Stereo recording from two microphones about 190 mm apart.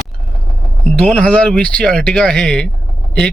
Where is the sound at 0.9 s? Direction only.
5° left (ahead or behind).